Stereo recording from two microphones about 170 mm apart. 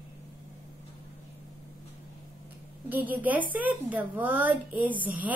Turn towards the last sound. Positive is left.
turn(degrees=-10)  # may be behind; listen again after turning